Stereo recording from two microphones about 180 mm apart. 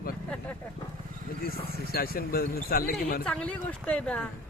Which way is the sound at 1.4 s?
55° left (ahead or behind).